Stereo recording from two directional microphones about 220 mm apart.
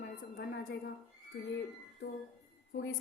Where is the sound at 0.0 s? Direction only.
50° left (ahead or behind).